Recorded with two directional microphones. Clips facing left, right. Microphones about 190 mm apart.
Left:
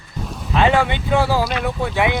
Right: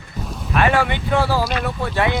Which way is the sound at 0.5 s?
20° left (ahead or behind).